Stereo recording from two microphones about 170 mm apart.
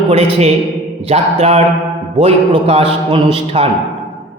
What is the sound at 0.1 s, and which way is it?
A man's voice, 40° right (ahead or behind).